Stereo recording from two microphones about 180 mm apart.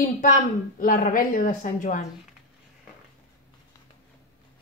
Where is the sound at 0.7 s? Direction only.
50° left (ahead or behind).